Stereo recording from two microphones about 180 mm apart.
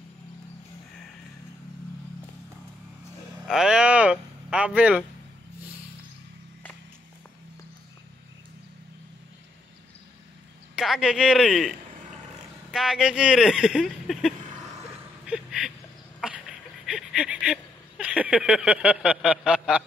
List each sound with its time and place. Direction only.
3.4 s speech: 5° right (ahead or behind)
10.8 s speech: centre (ahead or behind)
12.7 s speech: 5° right (ahead or behind)
15.2 s a sound: 5° right (ahead or behind)